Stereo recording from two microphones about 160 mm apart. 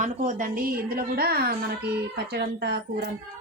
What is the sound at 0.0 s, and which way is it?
A woman's voice, 50° right (ahead or behind).